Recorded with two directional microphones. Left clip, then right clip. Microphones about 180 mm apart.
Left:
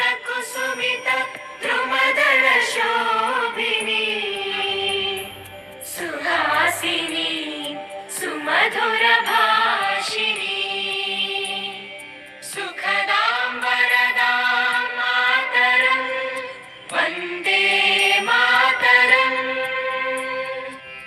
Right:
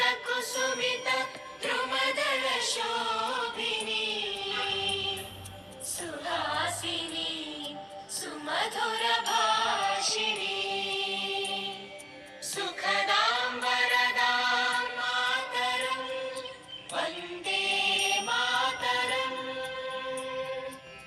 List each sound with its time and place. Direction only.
0.0 s music: centre (ahead or behind)
2.5 s choir: 10° left (ahead or behind)
2.8 s a capella: 30° left (ahead or behind)
3.8 s music: 10° left (ahead or behind); by 8.6 s 30° left (ahead or behind)
8.6 s music: 60° left (ahead or behind)
9.2 s music: 15° left (ahead or behind)